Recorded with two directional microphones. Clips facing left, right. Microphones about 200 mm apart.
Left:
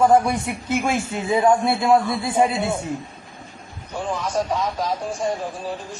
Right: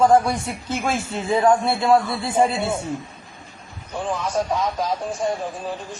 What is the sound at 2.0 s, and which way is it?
Speech, centre (ahead or behind).